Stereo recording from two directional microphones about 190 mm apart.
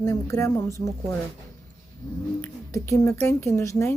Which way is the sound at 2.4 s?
15° left (ahead or behind).